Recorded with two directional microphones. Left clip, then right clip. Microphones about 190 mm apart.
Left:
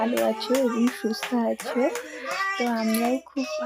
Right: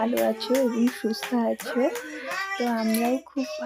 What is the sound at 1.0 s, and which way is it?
Music, centre (ahead or behind).